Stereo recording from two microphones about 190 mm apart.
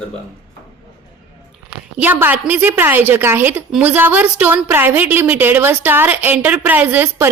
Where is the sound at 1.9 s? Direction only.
10° right (ahead or behind).